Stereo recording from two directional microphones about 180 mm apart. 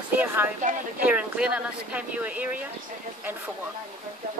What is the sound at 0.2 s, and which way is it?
Speech, 10° right (ahead or behind).